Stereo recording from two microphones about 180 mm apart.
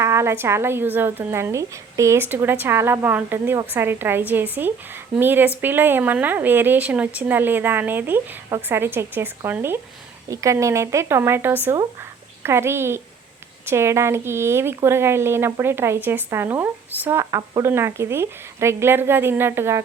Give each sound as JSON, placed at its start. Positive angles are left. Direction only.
{"t": 0.0, "sound": "a woman's voice", "side_deg": -15}